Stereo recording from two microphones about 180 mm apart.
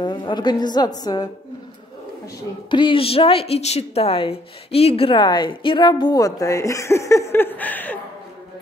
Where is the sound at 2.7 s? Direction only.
25° left (ahead or behind); by 7.9 s 10° left (ahead or behind).